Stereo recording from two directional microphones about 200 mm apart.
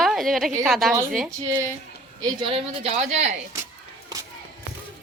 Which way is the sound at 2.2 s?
20° right (ahead or behind).